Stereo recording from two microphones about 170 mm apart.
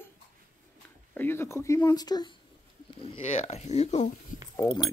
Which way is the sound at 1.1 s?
10° left (ahead or behind).